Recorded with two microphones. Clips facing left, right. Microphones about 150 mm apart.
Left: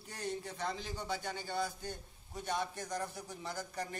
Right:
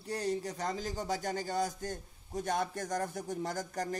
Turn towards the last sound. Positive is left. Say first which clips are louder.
# right 5 dB
turn(degrees=-45)  # may be behind; listen again after turning